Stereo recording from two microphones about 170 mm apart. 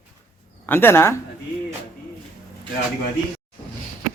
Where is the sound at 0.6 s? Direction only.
10° left (ahead or behind).